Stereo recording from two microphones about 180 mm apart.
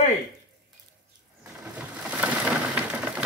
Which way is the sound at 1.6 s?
10° right (ahead or behind).